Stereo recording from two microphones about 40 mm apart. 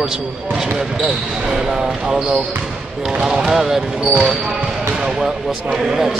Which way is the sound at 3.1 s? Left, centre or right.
Centre.